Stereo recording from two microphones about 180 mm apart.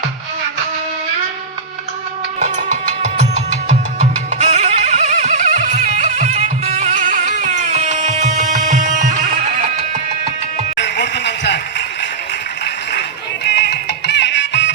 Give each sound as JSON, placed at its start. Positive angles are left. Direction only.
{"t": 2.4, "sound": "music", "side_deg": -45}
{"t": 10.8, "sound": "a sound", "side_deg": 75}
{"t": 12.9, "sound": "music", "side_deg": 65}